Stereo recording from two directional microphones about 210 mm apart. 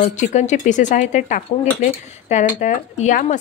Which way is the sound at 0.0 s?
35° left (ahead or behind).